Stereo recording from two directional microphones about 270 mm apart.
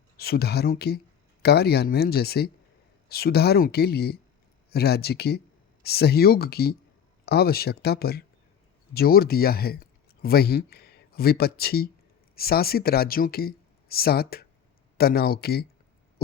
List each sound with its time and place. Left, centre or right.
0.2 s speech: left